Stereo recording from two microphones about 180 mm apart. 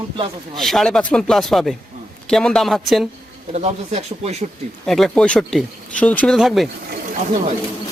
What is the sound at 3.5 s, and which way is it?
Speech, 40° right (ahead or behind).